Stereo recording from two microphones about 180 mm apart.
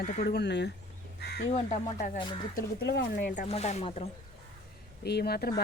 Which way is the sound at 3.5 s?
35° left (ahead or behind).